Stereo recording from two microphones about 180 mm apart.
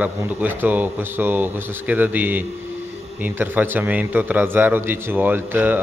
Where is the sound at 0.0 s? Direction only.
10° right (ahead or behind).